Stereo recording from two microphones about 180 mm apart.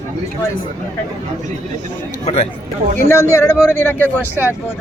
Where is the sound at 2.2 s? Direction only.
35° left (ahead or behind).